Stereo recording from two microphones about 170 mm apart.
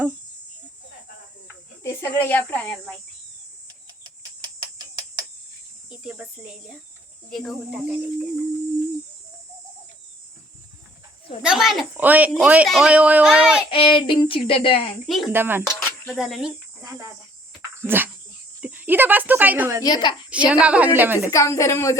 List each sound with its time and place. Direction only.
1.8 s speech: 15° left (ahead or behind)
7.3 s speech: centre (ahead or behind)
11.4 s speech: centre (ahead or behind)
13.7 s a sound: 30° left (ahead or behind)
15.0 s speech: centre (ahead or behind)
15.3 s a woman's voice: 10° right (ahead or behind)
15.7 s a sound: 15° left (ahead or behind)
16.1 s speech: 5° right (ahead or behind)
17.8 s speech: 10° right (ahead or behind)
19.8 s a child's voice: 25° left (ahead or behind)
20.3 s a woman's voice: 5° right (ahead or behind)
21.2 s speech: 15° left (ahead or behind)